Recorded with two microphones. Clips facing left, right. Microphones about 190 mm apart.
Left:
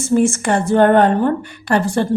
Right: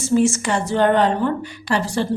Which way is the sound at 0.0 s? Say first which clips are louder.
Left 2 dB; 55° left (ahead or behind).